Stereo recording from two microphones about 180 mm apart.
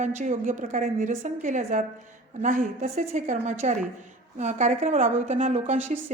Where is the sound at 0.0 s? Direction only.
40° right (ahead or behind).